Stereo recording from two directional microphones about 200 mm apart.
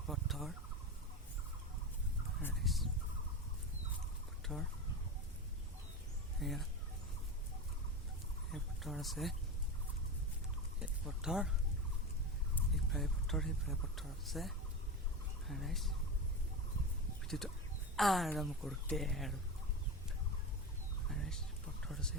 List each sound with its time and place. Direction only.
0.1 s fowl: centre (ahead or behind)
2.4 s fowl: centre (ahead or behind)
4.4 s fowl: centre (ahead or behind)
6.4 s a sound: centre (ahead or behind)
8.5 s a sound: centre (ahead or behind)
10.8 s a sound: 5° right (ahead or behind)
12.5 s a woman's voice: centre (ahead or behind)
17.2 s a woman's voice: centre (ahead or behind)
21.1 s turkey: 5° left (ahead or behind)
21.8 s speech: 5° left (ahead or behind)